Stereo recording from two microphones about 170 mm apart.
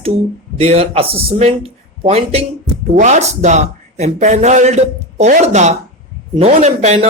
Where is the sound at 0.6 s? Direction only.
35° right (ahead or behind).